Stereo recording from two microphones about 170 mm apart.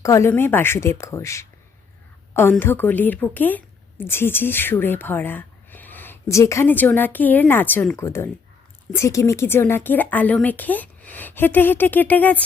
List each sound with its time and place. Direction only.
0.0 s a woman's voice: 15° left (ahead or behind)